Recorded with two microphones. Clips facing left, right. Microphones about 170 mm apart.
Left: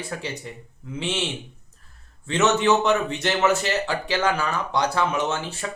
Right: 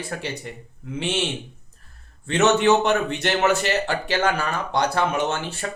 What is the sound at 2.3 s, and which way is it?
Speech, 55° right (ahead or behind).